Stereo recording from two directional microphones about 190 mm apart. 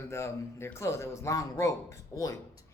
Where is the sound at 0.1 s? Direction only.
15° left (ahead or behind).